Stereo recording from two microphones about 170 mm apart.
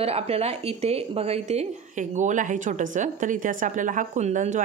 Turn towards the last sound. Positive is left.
turn(degrees=-45)  # may be behind; listen again after turning